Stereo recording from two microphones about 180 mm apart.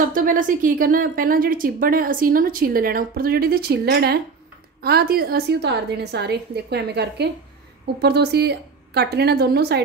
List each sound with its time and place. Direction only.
0.1 s a woman's voice: 50° right (ahead or behind)